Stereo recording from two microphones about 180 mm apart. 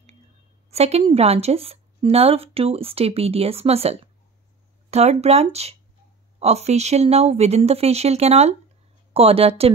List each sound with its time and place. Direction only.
0.7 s a woman's voice: 35° right (ahead or behind)